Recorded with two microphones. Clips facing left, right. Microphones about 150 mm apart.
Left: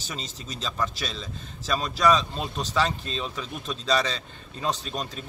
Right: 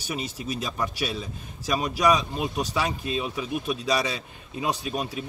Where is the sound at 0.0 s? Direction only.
10° right (ahead or behind).